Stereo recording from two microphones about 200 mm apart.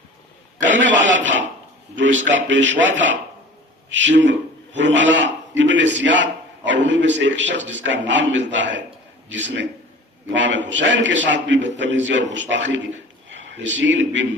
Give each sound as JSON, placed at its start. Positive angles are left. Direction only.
{"t": 0.7, "sound": "a sound", "side_deg": -70}
{"t": 2.0, "sound": "speech", "side_deg": -70}
{"t": 3.9, "sound": "a man's voice", "side_deg": -65}